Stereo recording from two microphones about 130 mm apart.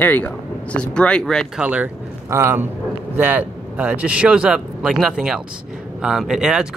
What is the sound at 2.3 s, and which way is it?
A man's voice, 20° right (ahead or behind).